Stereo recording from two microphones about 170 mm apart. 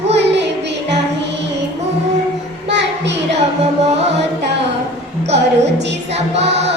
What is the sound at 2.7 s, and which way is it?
Child singing, 90° right.